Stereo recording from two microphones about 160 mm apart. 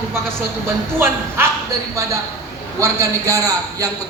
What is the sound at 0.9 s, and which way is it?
Speech, 15° right (ahead or behind).